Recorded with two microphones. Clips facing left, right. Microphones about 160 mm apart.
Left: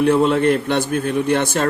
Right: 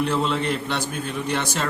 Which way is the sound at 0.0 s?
55° left (ahead or behind).